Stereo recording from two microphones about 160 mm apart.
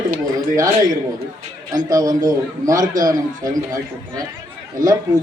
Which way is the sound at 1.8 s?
20° right (ahead or behind).